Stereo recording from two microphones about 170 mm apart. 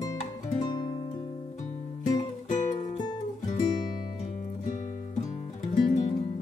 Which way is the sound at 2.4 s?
45° left (ahead or behind).